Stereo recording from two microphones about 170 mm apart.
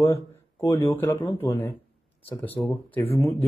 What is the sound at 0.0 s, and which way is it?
Speech, 20° left (ahead or behind).